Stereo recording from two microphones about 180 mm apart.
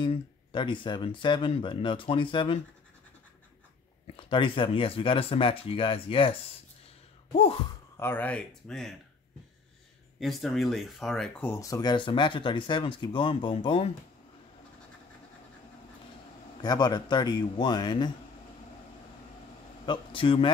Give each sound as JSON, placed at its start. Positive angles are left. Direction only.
{"t": 0.0, "sound": "speech", "side_deg": 25}
{"t": 4.2, "sound": "speech", "side_deg": 30}
{"t": 8.0, "sound": "speech", "side_deg": 10}
{"t": 10.2, "sound": "speech", "side_deg": 0}
{"t": 16.6, "sound": "speech", "side_deg": 25}
{"t": 19.9, "sound": "speech", "side_deg": 30}